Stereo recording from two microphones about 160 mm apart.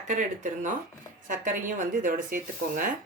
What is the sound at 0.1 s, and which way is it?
Speech, 50° right (ahead or behind).